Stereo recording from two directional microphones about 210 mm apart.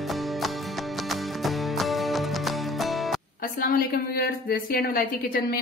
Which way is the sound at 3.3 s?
45° left (ahead or behind).